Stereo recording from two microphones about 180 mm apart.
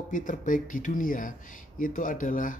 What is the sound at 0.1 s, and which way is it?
Speech, 45° left (ahead or behind).